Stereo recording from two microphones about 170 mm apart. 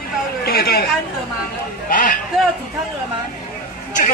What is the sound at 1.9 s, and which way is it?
Speech, 55° left (ahead or behind).